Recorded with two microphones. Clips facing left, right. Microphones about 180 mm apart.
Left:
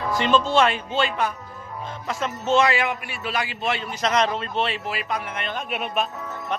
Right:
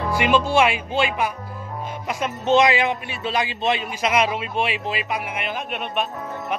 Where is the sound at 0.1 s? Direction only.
10° right (ahead or behind).